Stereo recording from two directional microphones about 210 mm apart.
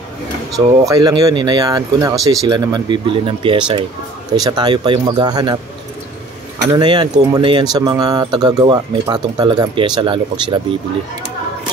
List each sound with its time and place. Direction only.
0.6 s speech: 15° right (ahead or behind)
6.7 s speech: 20° right (ahead or behind)